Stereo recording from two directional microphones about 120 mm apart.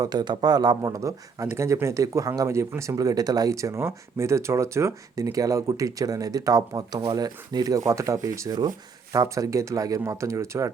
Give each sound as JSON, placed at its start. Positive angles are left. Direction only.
{"t": 0.0, "sound": "speech", "side_deg": -35}